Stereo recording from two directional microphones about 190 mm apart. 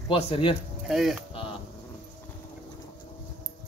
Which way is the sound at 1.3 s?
30° left (ahead or behind).